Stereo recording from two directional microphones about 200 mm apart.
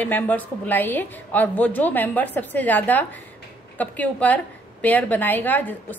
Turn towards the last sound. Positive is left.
turn(degrees=10)  # may be behind; listen again after turning